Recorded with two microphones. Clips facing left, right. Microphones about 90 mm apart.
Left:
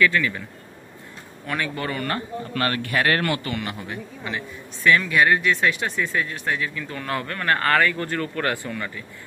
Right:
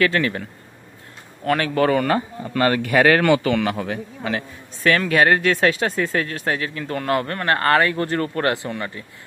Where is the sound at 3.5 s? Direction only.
90° right.